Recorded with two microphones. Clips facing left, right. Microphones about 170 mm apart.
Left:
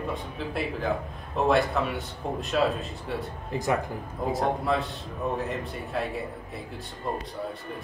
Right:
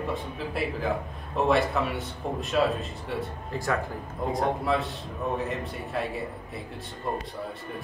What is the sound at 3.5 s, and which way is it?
Speech, 20° left (ahead or behind).